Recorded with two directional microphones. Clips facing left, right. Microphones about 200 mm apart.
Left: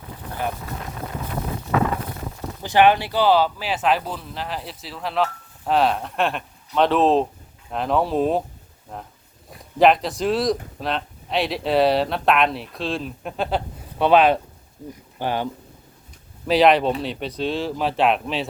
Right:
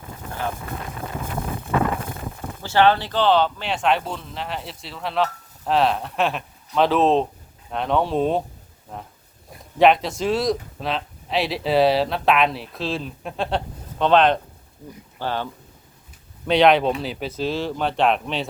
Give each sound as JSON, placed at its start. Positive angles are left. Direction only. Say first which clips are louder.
{"t": 2.6, "sound": "speech", "louder": "left 1 dB", "side_deg": 15}
{"t": 14.8, "sound": "speech", "louder": "left 2 dB", "side_deg": 20}
{"t": 16.5, "sound": "speech", "louder": "even", "side_deg": 0}